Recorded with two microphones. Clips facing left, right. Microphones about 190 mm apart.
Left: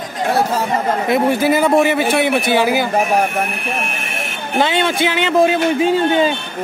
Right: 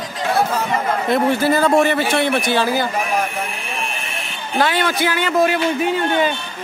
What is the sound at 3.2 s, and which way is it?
Speech, 65° left (ahead or behind).